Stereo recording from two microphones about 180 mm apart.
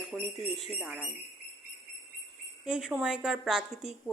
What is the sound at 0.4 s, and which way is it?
Speech, 35° left (ahead or behind).